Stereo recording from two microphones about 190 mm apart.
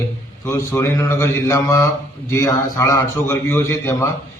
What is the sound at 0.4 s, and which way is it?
A man's voice, 15° left (ahead or behind).